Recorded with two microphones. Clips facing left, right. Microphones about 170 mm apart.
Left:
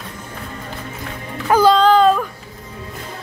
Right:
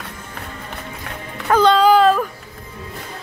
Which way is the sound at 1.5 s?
5° left (ahead or behind).